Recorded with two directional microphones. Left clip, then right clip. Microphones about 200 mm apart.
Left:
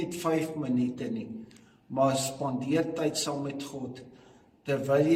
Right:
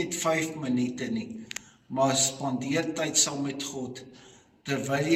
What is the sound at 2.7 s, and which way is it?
A man's voice, 20° left (ahead or behind).